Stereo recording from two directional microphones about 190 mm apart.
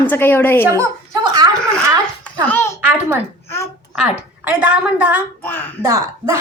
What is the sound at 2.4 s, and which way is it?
Speech, 10° left (ahead or behind).